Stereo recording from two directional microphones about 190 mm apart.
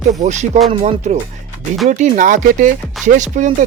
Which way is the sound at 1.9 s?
40° right (ahead or behind).